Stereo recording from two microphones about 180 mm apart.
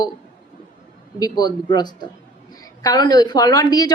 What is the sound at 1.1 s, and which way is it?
A woman's voice, 20° left (ahead or behind).